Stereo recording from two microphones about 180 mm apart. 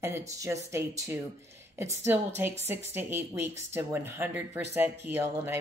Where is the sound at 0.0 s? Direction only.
15° right (ahead or behind).